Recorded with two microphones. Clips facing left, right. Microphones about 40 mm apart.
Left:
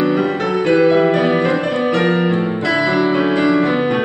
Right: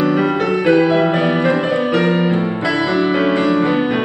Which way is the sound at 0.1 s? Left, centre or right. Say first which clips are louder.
Right 1 dB; centre.